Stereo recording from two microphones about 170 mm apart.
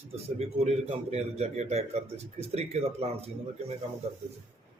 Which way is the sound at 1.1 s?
40° right (ahead or behind).